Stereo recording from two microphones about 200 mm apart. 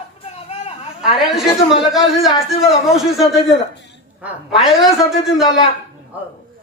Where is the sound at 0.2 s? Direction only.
30° left (ahead or behind).